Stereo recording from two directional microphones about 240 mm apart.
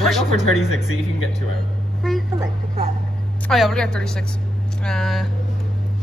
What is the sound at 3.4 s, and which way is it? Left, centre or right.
Speech, centre.